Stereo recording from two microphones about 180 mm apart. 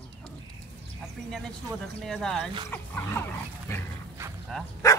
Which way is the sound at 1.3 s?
5° left (ahead or behind).